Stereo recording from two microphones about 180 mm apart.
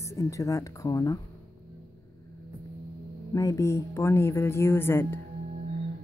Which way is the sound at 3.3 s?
20° left (ahead or behind).